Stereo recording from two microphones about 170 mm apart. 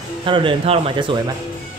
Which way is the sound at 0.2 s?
30° right (ahead or behind).